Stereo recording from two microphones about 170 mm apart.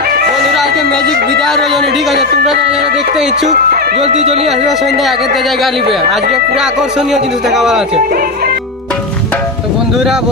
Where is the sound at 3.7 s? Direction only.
65° right (ahead or behind).